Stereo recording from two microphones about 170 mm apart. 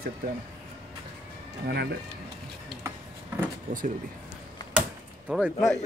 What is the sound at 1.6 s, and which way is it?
Speech, 70° right (ahead or behind).